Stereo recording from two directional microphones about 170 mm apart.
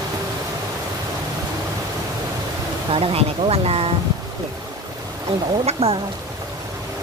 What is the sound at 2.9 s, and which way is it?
Speech, 35° right (ahead or behind).